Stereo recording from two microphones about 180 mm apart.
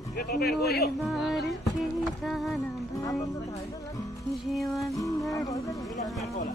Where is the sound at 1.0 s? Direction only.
Centre (ahead or behind).